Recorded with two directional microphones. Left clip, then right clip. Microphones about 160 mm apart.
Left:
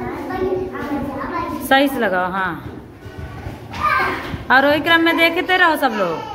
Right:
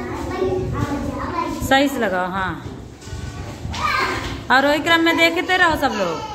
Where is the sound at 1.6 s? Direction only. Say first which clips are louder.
Left 2 dB; centre (ahead or behind).